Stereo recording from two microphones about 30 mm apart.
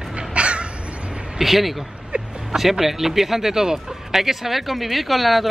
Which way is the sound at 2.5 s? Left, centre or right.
Centre.